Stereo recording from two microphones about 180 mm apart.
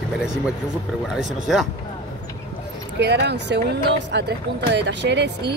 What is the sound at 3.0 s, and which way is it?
Speech, 70° right (ahead or behind).